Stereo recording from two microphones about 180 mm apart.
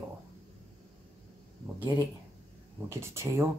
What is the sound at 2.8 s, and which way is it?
Speech, 15° right (ahead or behind).